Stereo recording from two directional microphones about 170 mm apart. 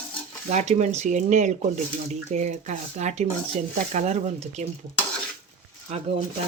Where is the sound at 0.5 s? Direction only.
40° right (ahead or behind).